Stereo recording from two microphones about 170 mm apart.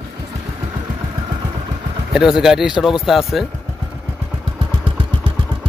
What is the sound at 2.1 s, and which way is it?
A man's voice, 5° right (ahead or behind).